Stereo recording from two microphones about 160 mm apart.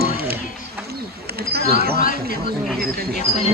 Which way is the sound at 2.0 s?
60° left (ahead or behind).